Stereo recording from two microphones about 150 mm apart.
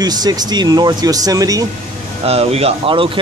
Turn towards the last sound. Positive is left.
turn(degrees=-40)  # may be behind; listen again after turning